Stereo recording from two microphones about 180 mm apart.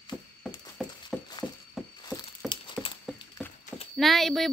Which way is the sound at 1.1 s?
5° left (ahead or behind).